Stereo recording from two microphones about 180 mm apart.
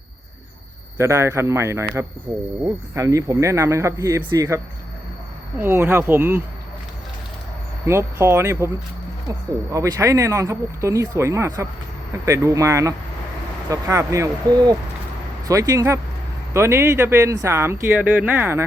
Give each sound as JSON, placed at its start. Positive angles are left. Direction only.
{"t": 0.9, "sound": "speech", "side_deg": -15}
{"t": 7.9, "sound": "speech", "side_deg": -15}
{"t": 9.7, "sound": "speech", "side_deg": -15}